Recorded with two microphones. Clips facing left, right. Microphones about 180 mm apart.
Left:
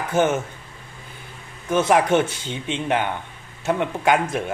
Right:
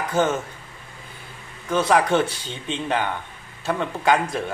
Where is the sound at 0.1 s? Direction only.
20° left (ahead or behind).